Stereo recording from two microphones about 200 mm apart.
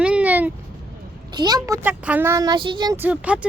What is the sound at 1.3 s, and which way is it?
Speech, 20° right (ahead or behind).